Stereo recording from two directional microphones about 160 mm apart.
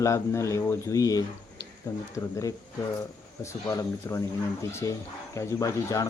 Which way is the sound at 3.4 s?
20° left (ahead or behind).